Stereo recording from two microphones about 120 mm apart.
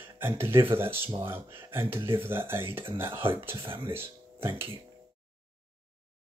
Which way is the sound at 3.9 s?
20° right (ahead or behind).